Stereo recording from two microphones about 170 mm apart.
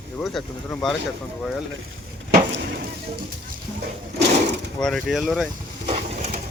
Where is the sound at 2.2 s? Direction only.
60° right (ahead or behind).